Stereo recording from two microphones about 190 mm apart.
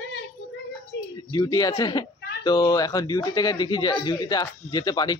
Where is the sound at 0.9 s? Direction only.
70° left (ahead or behind).